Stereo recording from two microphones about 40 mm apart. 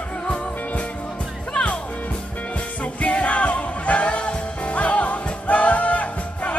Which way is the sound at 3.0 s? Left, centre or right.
Left.